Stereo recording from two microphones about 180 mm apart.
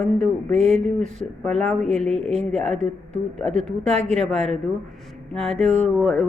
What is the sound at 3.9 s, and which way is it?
Speech, 35° right (ahead or behind).